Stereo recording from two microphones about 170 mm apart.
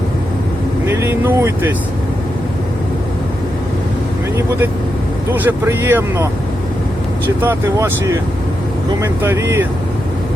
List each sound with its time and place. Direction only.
0.9 s speech: 15° right (ahead or behind)
5.3 s speech: 10° right (ahead or behind)
7.4 s speech: 15° right (ahead or behind)